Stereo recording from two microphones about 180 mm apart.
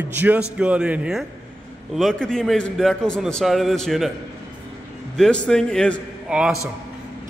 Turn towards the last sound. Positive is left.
turn(degrees=-5)  # may be behind; listen again after turning